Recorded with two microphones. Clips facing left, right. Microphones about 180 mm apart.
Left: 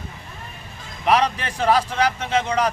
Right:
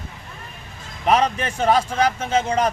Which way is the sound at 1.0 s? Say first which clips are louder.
Right 1 dB; 30° right (ahead or behind).